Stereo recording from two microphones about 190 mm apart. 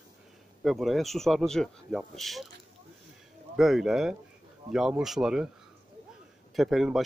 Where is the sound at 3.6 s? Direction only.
Centre (ahead or behind).